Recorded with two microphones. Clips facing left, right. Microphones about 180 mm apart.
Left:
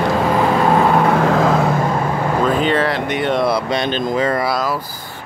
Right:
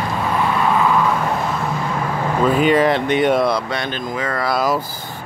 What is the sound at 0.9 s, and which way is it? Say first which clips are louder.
Vehicle: left 4 dB; 65° left (ahead or behind).